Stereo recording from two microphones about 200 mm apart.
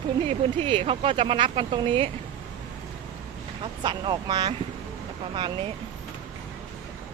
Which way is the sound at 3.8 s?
20° right (ahead or behind).